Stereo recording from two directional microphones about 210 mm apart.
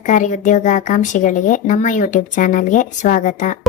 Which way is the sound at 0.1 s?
35° left (ahead or behind).